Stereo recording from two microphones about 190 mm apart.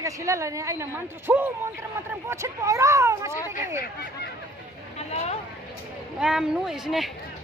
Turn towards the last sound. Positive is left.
turn(degrees=0)  # may be behind; listen again after turning